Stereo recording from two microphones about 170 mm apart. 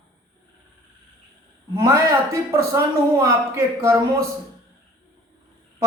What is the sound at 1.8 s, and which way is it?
A man's voice, 20° right (ahead or behind).